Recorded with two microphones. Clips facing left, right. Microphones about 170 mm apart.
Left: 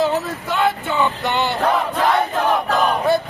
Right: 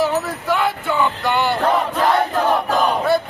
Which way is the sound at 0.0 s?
20° left (ahead or behind).